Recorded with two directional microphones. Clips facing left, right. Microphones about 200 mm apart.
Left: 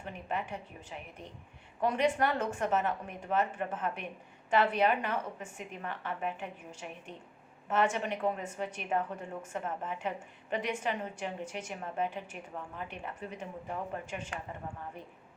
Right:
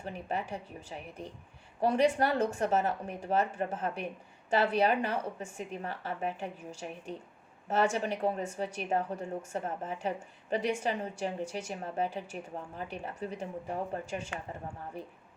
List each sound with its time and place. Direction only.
0.0 s a woman's voice: 35° right (ahead or behind)